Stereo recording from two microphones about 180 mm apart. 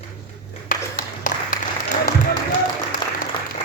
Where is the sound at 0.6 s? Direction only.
50° left (ahead or behind).